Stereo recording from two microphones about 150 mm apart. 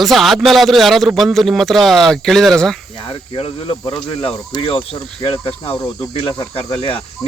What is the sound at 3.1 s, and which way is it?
Speech, 35° left (ahead or behind).